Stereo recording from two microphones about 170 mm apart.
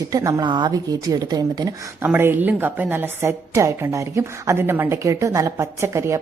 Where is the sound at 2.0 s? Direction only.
10° right (ahead or behind).